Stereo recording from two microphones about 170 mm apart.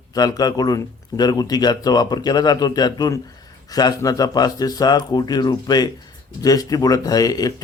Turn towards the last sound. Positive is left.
turn(degrees=20)  # may be behind; listen again after turning